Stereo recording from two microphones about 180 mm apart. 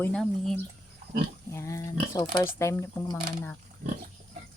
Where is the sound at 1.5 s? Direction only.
15° left (ahead or behind).